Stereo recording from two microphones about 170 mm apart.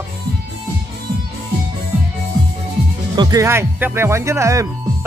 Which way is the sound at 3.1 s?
25° right (ahead or behind).